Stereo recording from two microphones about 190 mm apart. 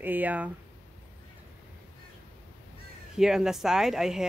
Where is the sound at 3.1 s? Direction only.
5° right (ahead or behind).